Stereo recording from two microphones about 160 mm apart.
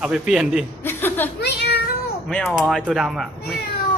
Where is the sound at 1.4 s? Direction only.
90° left.